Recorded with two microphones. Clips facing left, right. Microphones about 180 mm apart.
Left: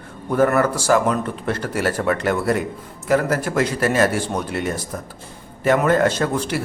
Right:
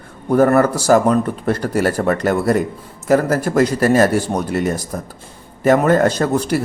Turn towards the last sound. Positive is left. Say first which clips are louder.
# right 4 dB
turn(degrees=-40)  # may be behind; listen again after turning